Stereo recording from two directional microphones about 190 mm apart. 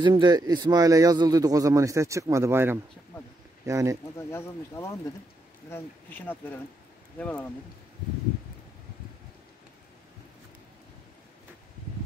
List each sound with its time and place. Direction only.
0.0 s speech: 25° right (ahead or behind)
4.3 s speech: 15° left (ahead or behind)